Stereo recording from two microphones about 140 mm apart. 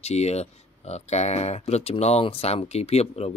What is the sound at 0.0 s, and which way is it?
Speech, 50° left (ahead or behind).